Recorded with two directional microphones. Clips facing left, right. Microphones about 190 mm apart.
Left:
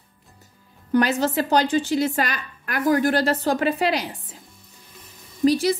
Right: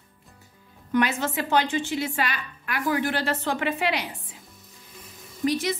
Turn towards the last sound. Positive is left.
turn(degrees=35)  # may be behind; listen again after turning